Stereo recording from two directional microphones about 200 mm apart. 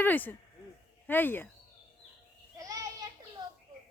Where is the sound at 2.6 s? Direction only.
15° right (ahead or behind).